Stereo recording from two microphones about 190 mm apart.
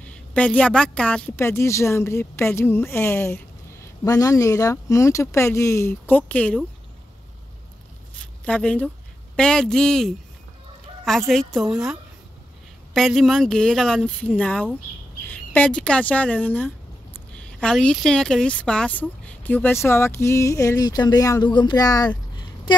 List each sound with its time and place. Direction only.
0.0 s speech: 5° left (ahead or behind)
8.2 s speech: 5° left (ahead or behind)
22.7 s a sound: 25° left (ahead or behind)